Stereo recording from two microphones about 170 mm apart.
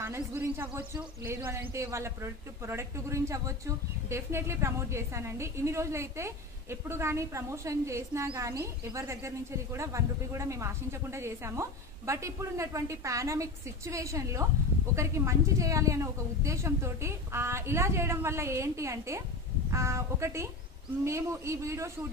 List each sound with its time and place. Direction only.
0.0 s a man's voice: 15° right (ahead or behind)